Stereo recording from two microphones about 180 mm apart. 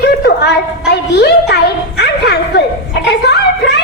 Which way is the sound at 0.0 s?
65° left (ahead or behind).